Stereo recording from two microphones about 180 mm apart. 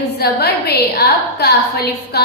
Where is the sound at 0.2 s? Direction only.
65° left (ahead or behind).